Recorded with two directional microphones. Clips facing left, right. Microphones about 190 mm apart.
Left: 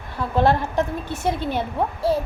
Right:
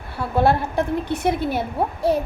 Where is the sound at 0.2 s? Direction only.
10° right (ahead or behind).